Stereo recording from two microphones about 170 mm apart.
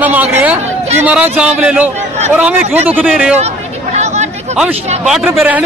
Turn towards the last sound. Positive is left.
turn(degrees=-10)  # may be behind; listen again after turning